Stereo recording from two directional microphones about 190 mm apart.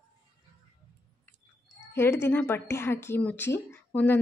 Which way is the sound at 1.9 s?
15° left (ahead or behind).